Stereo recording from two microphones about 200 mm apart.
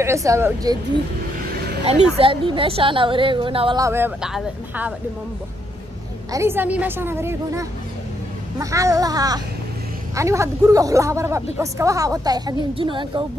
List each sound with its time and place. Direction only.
0.0 s a woman's voice: 15° right (ahead or behind)
1.9 s a woman's voice: 30° right (ahead or behind); by 4.9 s 5° right (ahead or behind)
6.3 s a woman's voice: 10° right (ahead or behind)